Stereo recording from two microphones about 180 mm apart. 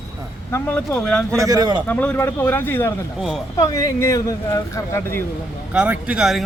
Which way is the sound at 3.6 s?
20° left (ahead or behind).